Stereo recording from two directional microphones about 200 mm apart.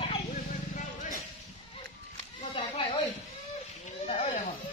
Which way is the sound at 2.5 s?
30° left (ahead or behind).